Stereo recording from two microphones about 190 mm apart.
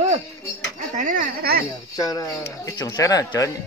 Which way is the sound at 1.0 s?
45° right (ahead or behind).